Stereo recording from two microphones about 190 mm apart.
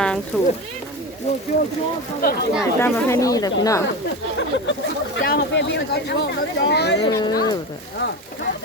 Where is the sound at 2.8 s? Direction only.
15° left (ahead or behind).